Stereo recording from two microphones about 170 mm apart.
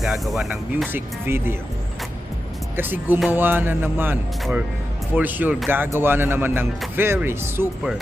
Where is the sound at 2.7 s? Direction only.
10° right (ahead or behind).